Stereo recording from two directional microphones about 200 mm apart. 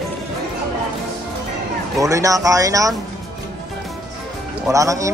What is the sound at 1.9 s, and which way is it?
Speech, 15° right (ahead or behind).